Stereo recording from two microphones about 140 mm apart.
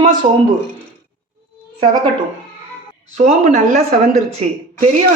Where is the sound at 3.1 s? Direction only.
60° right (ahead or behind).